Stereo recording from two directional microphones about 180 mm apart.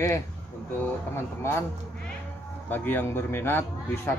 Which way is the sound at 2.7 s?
10° left (ahead or behind).